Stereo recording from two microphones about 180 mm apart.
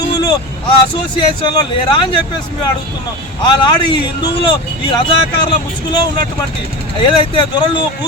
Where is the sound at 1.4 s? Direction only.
25° left (ahead or behind).